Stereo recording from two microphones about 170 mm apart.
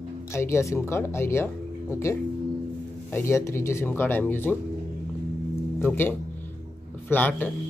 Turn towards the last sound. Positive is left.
turn(degrees=10)  # may be behind; listen again after turning